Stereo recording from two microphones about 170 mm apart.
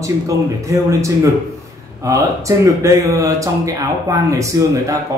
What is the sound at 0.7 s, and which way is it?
Speech, 20° right (ahead or behind).